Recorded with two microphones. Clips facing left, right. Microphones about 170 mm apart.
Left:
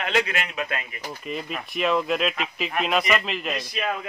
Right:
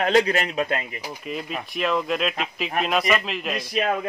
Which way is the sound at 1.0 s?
Centre (ahead or behind).